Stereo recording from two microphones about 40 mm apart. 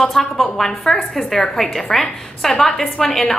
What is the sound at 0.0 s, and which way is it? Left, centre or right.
A woman's voice, centre.